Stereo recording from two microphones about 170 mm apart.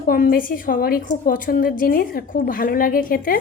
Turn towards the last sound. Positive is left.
turn(degrees=55)  # may be behind; listen again after turning